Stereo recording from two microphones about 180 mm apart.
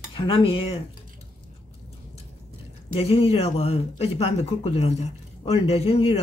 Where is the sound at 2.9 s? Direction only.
35° left (ahead or behind).